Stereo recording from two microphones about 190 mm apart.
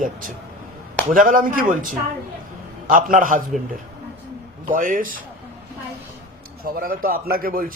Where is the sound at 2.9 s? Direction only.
45° right (ahead or behind).